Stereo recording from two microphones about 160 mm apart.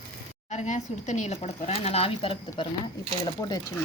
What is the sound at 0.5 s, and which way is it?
Speech, 45° left (ahead or behind).